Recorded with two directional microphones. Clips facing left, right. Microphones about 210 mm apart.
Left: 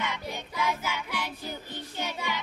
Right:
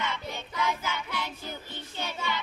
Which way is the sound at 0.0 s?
15° left (ahead or behind).